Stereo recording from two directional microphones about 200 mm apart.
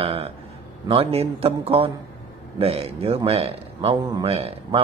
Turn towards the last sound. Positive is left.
turn(degrees=-30)  # may be behind; listen again after turning